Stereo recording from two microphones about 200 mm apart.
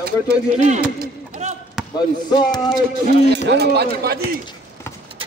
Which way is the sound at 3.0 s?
55° right (ahead or behind).